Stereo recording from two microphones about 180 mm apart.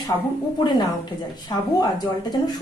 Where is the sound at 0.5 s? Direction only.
25° left (ahead or behind).